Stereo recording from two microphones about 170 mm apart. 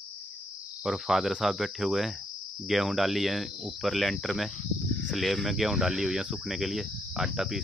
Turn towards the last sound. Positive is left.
turn(degrees=0)  # may be behind; listen again after turning